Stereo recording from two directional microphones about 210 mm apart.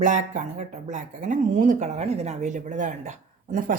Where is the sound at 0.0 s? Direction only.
35° right (ahead or behind).